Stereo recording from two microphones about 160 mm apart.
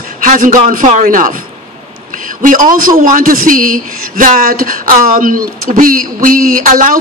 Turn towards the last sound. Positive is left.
turn(degrees=-55)  # may be behind; listen again after turning